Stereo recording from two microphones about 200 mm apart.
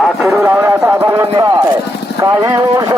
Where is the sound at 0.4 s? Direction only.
15° right (ahead or behind).